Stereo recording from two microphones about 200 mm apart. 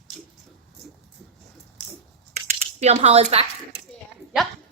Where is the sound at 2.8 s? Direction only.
30° right (ahead or behind).